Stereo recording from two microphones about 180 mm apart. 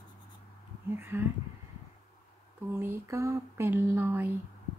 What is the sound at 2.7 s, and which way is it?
Speech, 15° right (ahead or behind).